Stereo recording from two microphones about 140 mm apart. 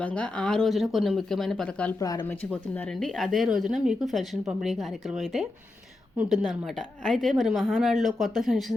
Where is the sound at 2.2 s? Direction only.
10° left (ahead or behind).